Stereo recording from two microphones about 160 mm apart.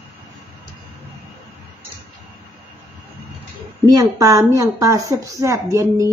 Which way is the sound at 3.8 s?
20° right (ahead or behind).